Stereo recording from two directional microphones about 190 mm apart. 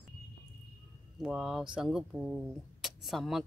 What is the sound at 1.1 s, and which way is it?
Speech, 5° right (ahead or behind).